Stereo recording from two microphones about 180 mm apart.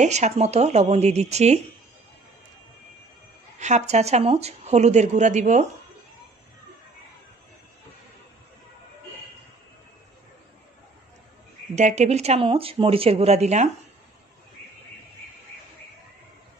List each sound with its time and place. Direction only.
0.0 s speech: 40° right (ahead or behind)
3.5 s speech: 40° right (ahead or behind)
11.7 s speech: 40° right (ahead or behind)